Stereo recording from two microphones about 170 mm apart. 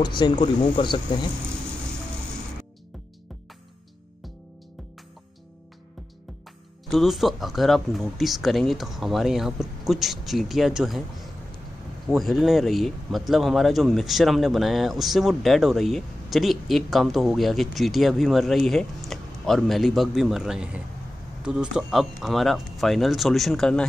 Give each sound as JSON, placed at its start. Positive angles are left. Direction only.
{"t": 0.2, "sound": "speech", "side_deg": 30}
{"t": 6.9, "sound": "speech", "side_deg": 0}
{"t": 12.1, "sound": "speech", "side_deg": 0}